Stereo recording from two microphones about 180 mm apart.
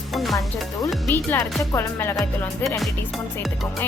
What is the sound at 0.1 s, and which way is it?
Music, centre (ahead or behind).